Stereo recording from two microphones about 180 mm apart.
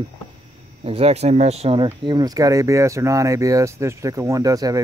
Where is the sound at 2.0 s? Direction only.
20° right (ahead or behind).